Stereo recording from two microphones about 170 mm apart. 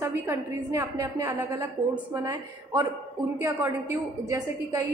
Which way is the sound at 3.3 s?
15° right (ahead or behind).